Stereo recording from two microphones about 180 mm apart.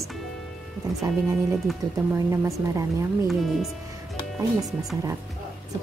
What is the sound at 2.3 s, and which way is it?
Speech, 15° right (ahead or behind).